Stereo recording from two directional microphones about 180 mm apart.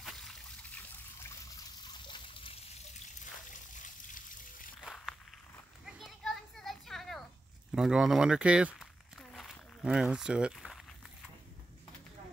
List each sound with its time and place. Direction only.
0.0 s trickle: centre (ahead or behind)
2.0 s water: 25° left (ahead or behind)
3.4 s trickle: 45° left (ahead or behind)
4.7 s walk: centre (ahead or behind)
5.9 s children playing: centre (ahead or behind)
7.7 s speech: 5° right (ahead or behind)
9.3 s a sound: centre (ahead or behind)